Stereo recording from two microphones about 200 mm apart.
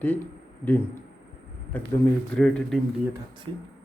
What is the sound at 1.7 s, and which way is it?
Speech, 10° left (ahead or behind).